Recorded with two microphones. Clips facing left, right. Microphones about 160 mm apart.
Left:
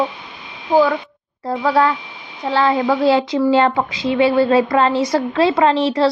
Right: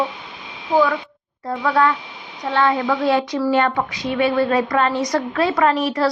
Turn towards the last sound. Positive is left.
turn(degrees=25)  # may be behind; listen again after turning